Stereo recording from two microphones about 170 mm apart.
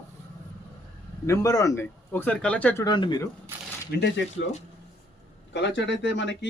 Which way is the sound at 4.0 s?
90° left.